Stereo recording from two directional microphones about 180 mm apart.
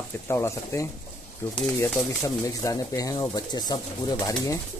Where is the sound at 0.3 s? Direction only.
15° left (ahead or behind).